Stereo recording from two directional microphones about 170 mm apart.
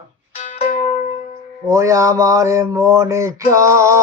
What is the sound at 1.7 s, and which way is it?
Mantra, 20° right (ahead or behind).